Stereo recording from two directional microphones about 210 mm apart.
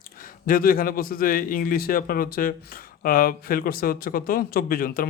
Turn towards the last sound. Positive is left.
turn(degrees=45)  # may be behind; listen again after turning